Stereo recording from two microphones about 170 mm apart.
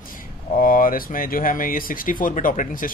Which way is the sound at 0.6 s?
55° left (ahead or behind).